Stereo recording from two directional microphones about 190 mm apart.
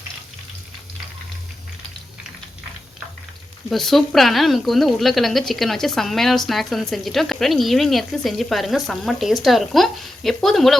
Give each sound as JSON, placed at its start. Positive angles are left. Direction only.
{"t": 3.7, "sound": "speech", "side_deg": 0}